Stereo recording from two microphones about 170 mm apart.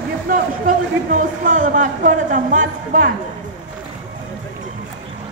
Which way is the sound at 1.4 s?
50° right (ahead or behind).